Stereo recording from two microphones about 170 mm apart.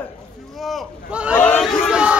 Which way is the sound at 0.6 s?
Centre (ahead or behind).